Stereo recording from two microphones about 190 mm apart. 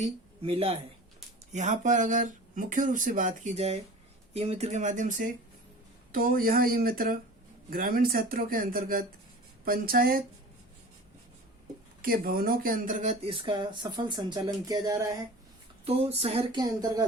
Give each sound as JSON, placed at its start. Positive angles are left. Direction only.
{"t": 0.0, "sound": "speech", "side_deg": -30}
{"t": 12.0, "sound": "speech", "side_deg": -50}
{"t": 15.8, "sound": "speech", "side_deg": -30}